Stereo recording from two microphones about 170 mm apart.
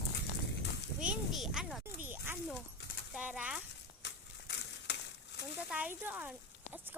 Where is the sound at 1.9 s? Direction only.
10° right (ahead or behind).